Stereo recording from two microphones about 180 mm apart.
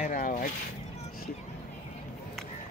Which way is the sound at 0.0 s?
45° left (ahead or behind).